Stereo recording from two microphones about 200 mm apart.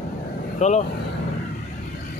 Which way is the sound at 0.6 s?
35° left (ahead or behind).